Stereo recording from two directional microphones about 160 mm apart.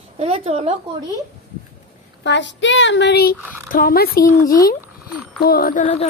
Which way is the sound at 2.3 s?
90° left.